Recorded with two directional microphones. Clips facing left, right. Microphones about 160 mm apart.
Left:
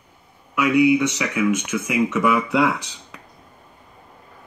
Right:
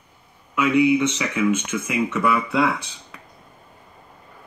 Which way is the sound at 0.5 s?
10° left (ahead or behind).